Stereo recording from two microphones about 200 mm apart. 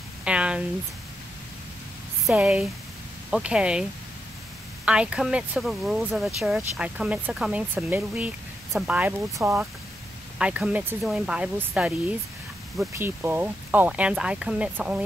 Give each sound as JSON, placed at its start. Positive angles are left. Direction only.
{"t": 0.2, "sound": "a sound", "side_deg": -5}
{"t": 2.2, "sound": "speech", "side_deg": -5}
{"t": 4.8, "sound": "speech", "side_deg": -5}